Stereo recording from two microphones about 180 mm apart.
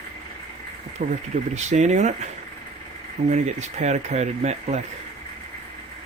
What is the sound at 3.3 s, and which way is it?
Speech, 40° right (ahead or behind).